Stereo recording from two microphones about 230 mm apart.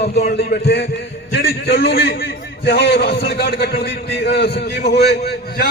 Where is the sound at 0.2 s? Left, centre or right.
Left.